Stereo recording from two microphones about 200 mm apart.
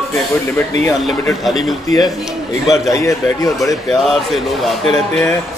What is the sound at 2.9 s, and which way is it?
Speech, 15° left (ahead or behind).